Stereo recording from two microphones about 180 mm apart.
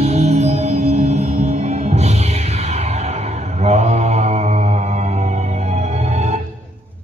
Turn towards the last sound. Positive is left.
turn(degrees=-40)  # may be behind; listen again after turning